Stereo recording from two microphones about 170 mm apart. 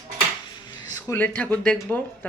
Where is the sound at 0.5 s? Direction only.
25° left (ahead or behind).